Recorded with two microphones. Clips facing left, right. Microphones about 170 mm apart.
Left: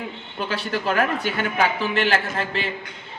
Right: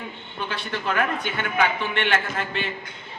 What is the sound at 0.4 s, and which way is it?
A man's voice, 35° left (ahead or behind).